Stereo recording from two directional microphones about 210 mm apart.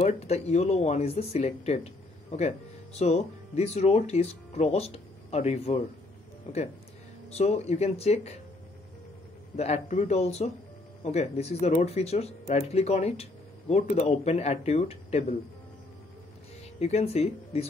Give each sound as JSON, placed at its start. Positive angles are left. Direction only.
{"t": 0.0, "sound": "speech", "side_deg": 30}
{"t": 9.6, "sound": "speech", "side_deg": 30}
{"t": 16.8, "sound": "speech", "side_deg": 30}